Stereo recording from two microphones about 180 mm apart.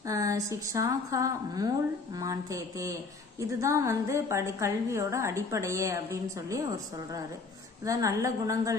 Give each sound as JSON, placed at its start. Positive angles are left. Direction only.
{"t": 0.0, "sound": "a woman's voice", "side_deg": -20}
{"t": 7.8, "sound": "a woman's voice", "side_deg": -20}